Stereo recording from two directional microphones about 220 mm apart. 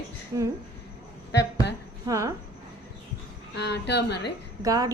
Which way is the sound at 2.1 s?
15° right (ahead or behind).